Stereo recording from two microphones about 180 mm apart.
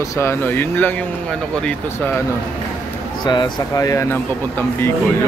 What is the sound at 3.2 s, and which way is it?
Speech, 20° left (ahead or behind).